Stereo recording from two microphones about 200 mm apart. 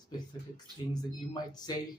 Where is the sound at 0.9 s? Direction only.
20° left (ahead or behind).